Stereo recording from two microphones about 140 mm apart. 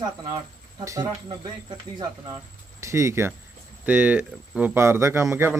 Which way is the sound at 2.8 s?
20° right (ahead or behind).